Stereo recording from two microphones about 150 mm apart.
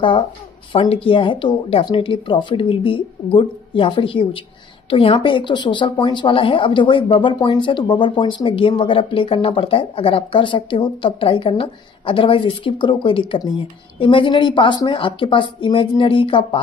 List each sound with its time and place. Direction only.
0.7 s a woman's voice: 40° left (ahead or behind)